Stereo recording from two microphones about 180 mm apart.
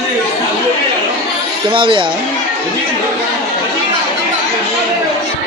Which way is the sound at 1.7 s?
25° right (ahead or behind).